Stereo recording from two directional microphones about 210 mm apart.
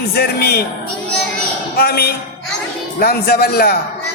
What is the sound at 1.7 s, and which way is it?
Speech, 45° left (ahead or behind).